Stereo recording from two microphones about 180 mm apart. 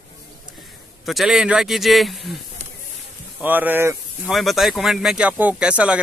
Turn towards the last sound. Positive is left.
turn(degrees=-5)  # may be behind; listen again after turning